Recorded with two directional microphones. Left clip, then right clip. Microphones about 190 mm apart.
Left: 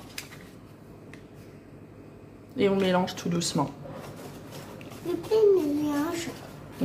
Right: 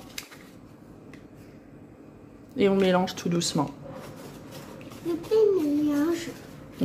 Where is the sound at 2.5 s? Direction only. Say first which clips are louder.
Right 2 dB; 20° right (ahead or behind).